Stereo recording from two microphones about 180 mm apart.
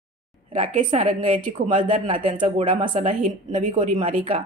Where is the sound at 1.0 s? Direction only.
45° right (ahead or behind).